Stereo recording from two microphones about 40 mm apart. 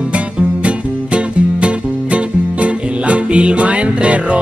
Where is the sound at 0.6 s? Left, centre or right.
Right.